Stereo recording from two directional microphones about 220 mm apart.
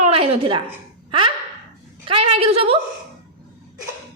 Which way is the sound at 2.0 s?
25° right (ahead or behind).